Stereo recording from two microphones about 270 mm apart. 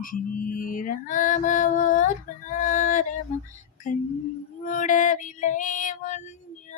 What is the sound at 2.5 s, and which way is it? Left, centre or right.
Yodeling, left.